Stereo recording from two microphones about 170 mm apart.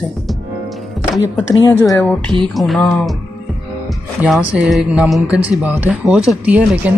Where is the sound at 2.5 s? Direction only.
Centre (ahead or behind).